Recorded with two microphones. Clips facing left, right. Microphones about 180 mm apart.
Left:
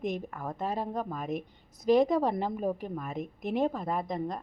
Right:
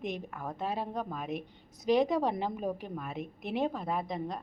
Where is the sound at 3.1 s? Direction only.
40° left (ahead or behind).